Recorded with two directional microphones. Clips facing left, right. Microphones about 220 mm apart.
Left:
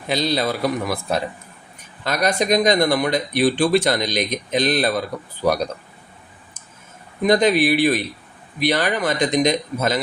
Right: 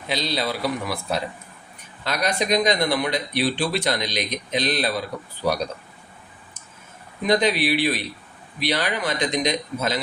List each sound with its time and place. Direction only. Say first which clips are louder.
0.1 s speech: left 5 dB; 45° left (ahead or behind)
7.3 s speech: left 4 dB; 50° left (ahead or behind)